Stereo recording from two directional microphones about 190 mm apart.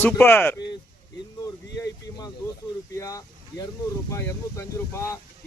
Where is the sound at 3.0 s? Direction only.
15° left (ahead or behind).